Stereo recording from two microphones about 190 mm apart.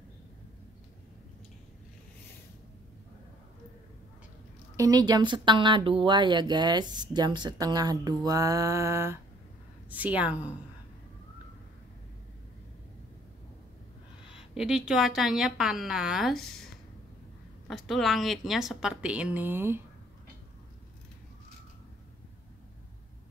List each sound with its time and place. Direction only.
4.7 s a woman's voice: 20° right (ahead or behind)
14.3 s a woman's voice: 5° right (ahead or behind)
17.6 s a woman's voice: centre (ahead or behind)